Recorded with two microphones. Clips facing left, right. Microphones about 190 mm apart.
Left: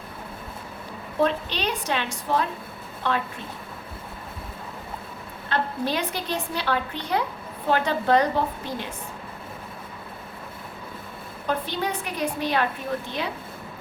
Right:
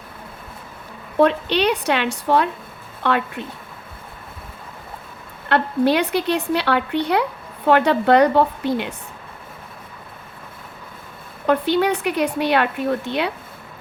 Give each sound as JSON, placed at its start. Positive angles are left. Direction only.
{"t": 1.2, "sound": "a woman's voice", "side_deg": -70}
{"t": 5.5, "sound": "a woman's voice", "side_deg": -70}
{"t": 11.4, "sound": "a woman's voice", "side_deg": -70}